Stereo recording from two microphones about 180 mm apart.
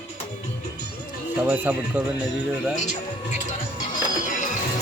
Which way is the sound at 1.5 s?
10° right (ahead or behind).